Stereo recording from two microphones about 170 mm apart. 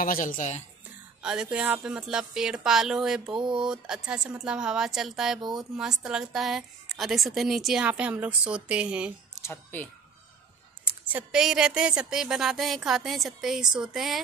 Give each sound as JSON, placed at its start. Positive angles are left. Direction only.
{"t": 0.0, "sound": "speech", "side_deg": 55}
{"t": 1.2, "sound": "a woman's voice", "side_deg": -5}
{"t": 3.3, "sound": "a sound", "side_deg": -30}
{"t": 3.6, "sound": "a woman's voice", "side_deg": -5}
{"t": 9.3, "sound": "a sound", "side_deg": 15}
{"t": 11.1, "sound": "a woman's voice", "side_deg": -5}